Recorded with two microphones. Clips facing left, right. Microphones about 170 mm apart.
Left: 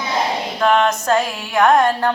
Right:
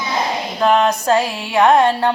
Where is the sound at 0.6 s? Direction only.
35° right (ahead or behind).